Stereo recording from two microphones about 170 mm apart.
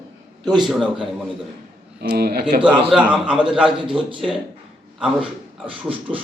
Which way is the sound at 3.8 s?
30° right (ahead or behind).